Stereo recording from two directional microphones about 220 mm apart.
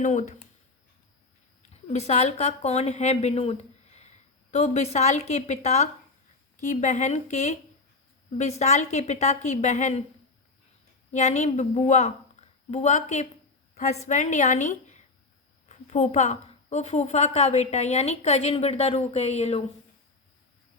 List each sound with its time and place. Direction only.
0.0 s a woman's voice: 35° left (ahead or behind)
1.7 s a woman's voice: 30° left (ahead or behind)
11.1 s a woman's voice: 30° left (ahead or behind)